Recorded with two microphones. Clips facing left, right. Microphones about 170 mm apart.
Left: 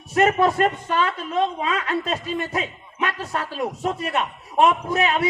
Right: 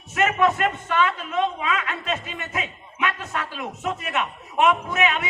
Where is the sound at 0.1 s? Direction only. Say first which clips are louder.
Left 3 dB; 35° left (ahead or behind).